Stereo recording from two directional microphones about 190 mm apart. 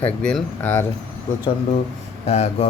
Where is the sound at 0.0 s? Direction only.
5° left (ahead or behind).